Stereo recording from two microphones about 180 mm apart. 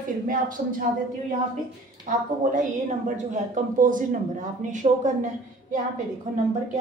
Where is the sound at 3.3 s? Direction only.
45° right (ahead or behind).